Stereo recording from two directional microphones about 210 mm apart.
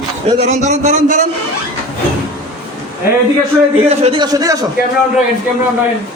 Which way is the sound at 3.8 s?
30° right (ahead or behind).